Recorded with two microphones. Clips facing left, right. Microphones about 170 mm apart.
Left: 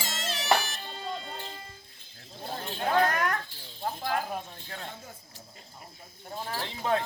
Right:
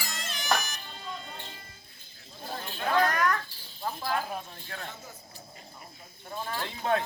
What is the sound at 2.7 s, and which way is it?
Children playing, 30° left (ahead or behind).